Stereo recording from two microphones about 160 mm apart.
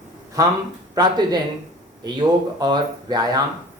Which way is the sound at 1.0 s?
25° right (ahead or behind).